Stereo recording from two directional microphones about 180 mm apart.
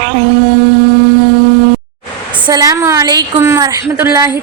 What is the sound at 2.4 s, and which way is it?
A woman's voice, 20° right (ahead or behind).